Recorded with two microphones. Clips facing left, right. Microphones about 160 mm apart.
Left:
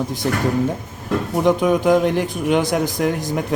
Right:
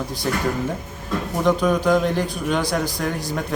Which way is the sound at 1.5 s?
20° left (ahead or behind).